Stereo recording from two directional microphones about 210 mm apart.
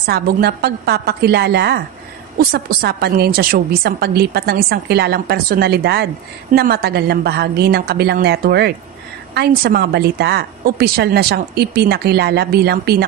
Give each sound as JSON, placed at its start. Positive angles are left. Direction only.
{"t": 0.0, "sound": "a woman's voice", "side_deg": -50}